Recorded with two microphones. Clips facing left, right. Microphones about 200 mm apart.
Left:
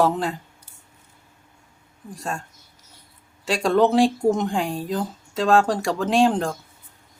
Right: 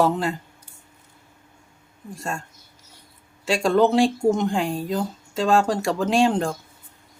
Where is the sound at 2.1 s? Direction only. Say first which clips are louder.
Even; centre (ahead or behind).